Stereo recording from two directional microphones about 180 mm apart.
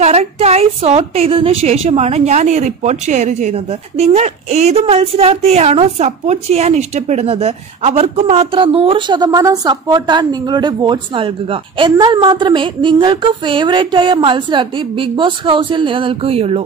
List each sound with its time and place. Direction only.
0.0 s a woman's voice: 35° right (ahead or behind)